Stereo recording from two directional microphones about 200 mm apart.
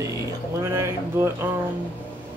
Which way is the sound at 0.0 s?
15° right (ahead or behind).